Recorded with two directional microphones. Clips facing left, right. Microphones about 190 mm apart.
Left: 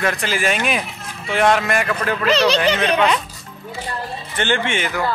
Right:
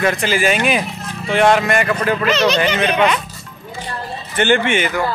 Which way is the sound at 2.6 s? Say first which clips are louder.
Right 1 dB; 5° right (ahead or behind).